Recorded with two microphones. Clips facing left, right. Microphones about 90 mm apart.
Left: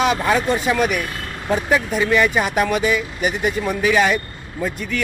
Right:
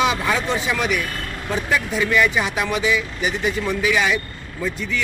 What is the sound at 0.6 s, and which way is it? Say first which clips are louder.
Speech: left 3 dB; 50° left (ahead or behind).